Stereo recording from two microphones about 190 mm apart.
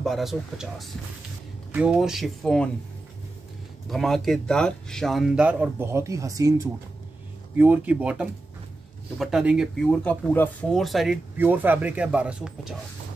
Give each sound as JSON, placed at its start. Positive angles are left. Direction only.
{"t": 0.0, "sound": "speech", "side_deg": 0}
{"t": 3.9, "sound": "speech", "side_deg": 0}